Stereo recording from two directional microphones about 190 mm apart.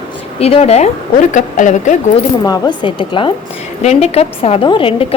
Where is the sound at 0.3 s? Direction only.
35° left (ahead or behind).